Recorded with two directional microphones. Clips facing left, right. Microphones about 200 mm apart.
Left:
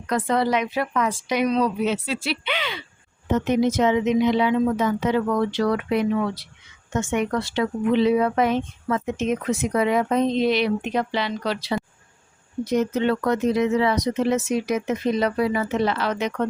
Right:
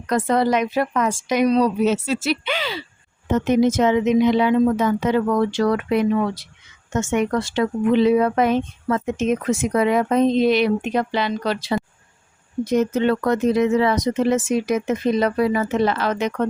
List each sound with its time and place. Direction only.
0.1 s speech: 45° right (ahead or behind)
12.7 s speech: 50° right (ahead or behind)